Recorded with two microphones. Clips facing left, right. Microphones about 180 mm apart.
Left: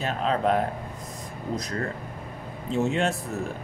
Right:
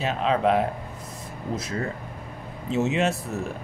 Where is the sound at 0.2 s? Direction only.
40° left (ahead or behind).